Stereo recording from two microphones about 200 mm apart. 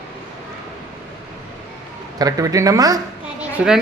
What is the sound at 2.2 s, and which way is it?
Speech, 15° right (ahead or behind).